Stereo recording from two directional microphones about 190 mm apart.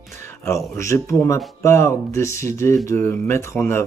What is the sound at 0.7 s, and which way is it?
Speech, 15° left (ahead or behind).